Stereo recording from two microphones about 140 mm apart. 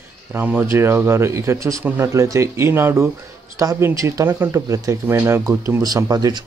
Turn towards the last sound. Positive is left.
turn(degrees=-25)  # may be behind; listen again after turning